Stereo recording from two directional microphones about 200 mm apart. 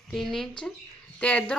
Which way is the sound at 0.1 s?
Centre (ahead or behind).